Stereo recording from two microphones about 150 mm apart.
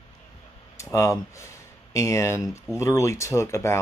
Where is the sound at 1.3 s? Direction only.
20° left (ahead or behind).